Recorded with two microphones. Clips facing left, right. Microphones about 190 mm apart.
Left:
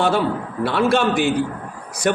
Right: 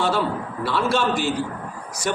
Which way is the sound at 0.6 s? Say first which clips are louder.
Left 5 dB; 60° left (ahead or behind).